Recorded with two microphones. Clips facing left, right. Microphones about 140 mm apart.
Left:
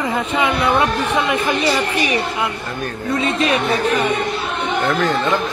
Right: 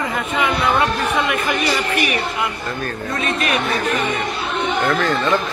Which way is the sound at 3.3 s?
25° left (ahead or behind).